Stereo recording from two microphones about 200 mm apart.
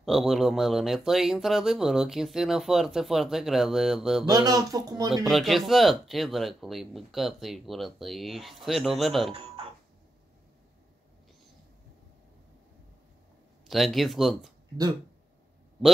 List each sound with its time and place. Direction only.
0.0 s speech: centre (ahead or behind)
4.5 s speech: 20° right (ahead or behind)
5.3 s speech: centre (ahead or behind)
9.3 s a sound: 30° right (ahead or behind)
13.7 s speech: centre (ahead or behind)